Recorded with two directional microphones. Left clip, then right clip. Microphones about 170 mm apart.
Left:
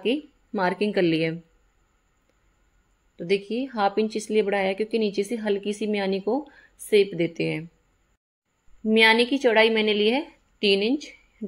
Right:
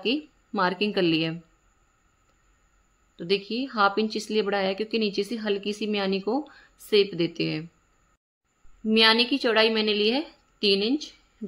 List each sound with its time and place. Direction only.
0.0 s speech: 5° left (ahead or behind)
3.2 s a woman's voice: 5° left (ahead or behind)
9.0 s a woman's voice: 10° left (ahead or behind)
10.6 s a woman's voice: 35° right (ahead or behind)